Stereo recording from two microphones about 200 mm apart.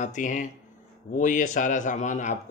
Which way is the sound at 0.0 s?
40° left (ahead or behind).